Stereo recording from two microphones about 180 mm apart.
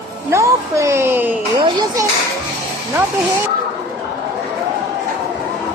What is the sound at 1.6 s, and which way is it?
Speech, 20° right (ahead or behind).